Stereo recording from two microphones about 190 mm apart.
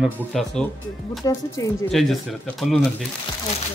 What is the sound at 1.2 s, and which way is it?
Speech, 20° left (ahead or behind).